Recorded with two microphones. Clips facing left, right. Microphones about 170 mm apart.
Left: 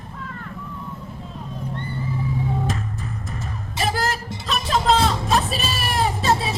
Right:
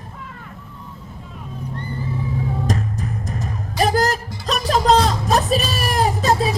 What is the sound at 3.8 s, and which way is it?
Music, 40° right (ahead or behind).